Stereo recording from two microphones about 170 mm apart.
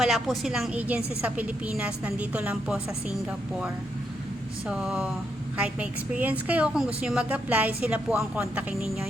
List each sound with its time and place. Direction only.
0.0 s a woman's voice: centre (ahead or behind)
4.7 s a woman's voice: 5° right (ahead or behind)